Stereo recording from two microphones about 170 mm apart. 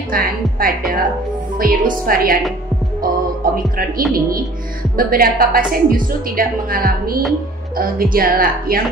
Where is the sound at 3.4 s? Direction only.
60° right (ahead or behind).